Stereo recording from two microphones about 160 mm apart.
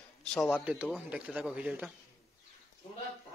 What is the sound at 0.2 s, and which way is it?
Speech, 5° left (ahead or behind).